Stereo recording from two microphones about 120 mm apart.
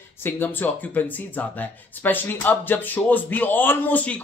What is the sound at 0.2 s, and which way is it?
Speech, 15° left (ahead or behind).